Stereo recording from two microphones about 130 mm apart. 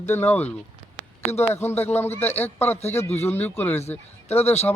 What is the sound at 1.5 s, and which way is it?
A man's voice, 15° left (ahead or behind).